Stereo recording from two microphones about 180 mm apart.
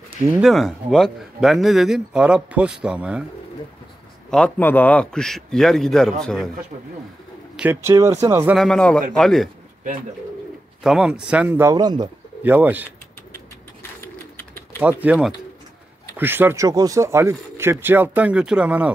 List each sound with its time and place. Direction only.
0.3 s speech: centre (ahead or behind)
4.3 s speech: 5° left (ahead or behind)
7.5 s speech: 10° right (ahead or behind)
8.5 s speech: 5° left (ahead or behind)
10.8 s speech: 5° right (ahead or behind)
11.7 s speech: 25° right (ahead or behind)
12.4 s speech: 10° right (ahead or behind)
14.8 s speech: 10° right (ahead or behind)